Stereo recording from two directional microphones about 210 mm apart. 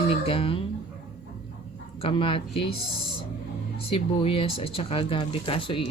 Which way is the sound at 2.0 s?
25° left (ahead or behind).